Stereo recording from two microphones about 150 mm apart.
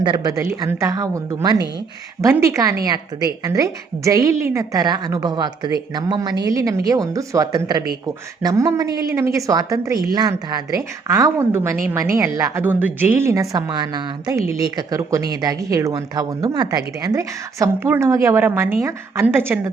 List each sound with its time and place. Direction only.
0.0 s a woman's voice: 30° right (ahead or behind)